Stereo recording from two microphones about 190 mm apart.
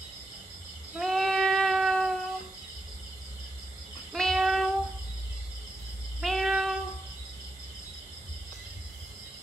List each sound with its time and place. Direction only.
0.9 s a sound: centre (ahead or behind)
4.1 s child singing: centre (ahead or behind)
6.2 s child singing: centre (ahead or behind)